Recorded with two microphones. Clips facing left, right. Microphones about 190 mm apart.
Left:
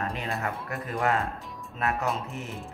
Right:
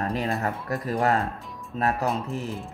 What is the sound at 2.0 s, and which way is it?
Speech, centre (ahead or behind).